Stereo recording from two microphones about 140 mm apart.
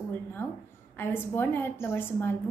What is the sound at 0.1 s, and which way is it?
A woman's voice, 15° left (ahead or behind).